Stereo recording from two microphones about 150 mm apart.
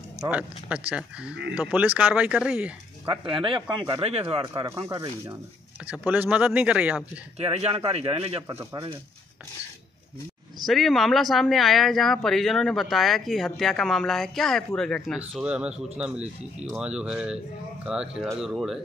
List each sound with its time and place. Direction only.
0.3 s speech: 10° right (ahead or behind)
3.1 s speech: 35° right (ahead or behind)
4.6 s speech: 20° right (ahead or behind)
7.3 s speech: 45° right (ahead or behind)
8.5 s speech: 20° right (ahead or behind)
10.6 s speech: centre (ahead or behind)